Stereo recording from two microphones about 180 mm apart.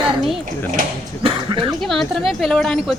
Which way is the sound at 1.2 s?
30° right (ahead or behind).